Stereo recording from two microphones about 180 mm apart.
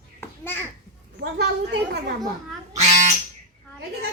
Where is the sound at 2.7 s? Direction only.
40° right (ahead or behind).